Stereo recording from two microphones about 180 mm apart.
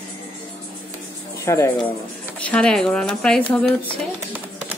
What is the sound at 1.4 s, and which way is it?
Speech, 15° left (ahead or behind).